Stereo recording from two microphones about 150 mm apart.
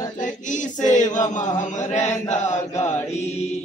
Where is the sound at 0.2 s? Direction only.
55° left (ahead or behind).